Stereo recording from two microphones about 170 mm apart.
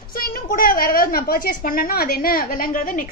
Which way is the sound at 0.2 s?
55° left (ahead or behind).